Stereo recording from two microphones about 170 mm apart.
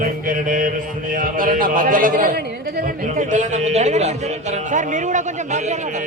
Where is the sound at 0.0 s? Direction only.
50° right (ahead or behind).